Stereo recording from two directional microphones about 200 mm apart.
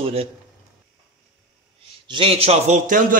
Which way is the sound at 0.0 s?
30° right (ahead or behind).